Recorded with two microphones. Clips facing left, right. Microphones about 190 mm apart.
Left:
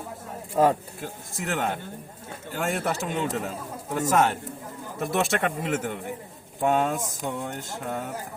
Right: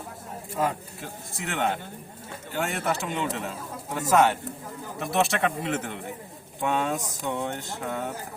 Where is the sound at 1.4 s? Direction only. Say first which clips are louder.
Even; 45° left (ahead or behind).